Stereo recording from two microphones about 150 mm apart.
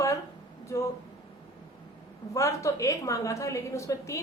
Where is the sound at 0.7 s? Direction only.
20° left (ahead or behind).